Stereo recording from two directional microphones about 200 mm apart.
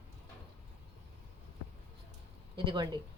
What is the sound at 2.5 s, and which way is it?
Speech, 25° right (ahead or behind).